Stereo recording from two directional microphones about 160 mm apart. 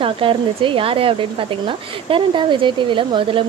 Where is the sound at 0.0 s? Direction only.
35° right (ahead or behind).